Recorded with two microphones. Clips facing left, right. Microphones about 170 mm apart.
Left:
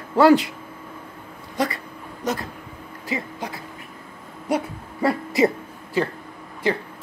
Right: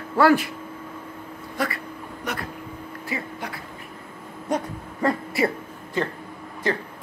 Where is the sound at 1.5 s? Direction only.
20° left (ahead or behind).